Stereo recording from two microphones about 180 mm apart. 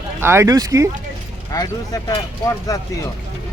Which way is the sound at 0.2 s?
15° right (ahead or behind).